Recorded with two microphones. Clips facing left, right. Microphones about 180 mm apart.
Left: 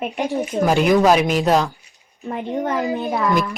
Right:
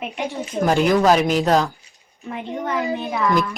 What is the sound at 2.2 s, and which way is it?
Speech, 45° left (ahead or behind).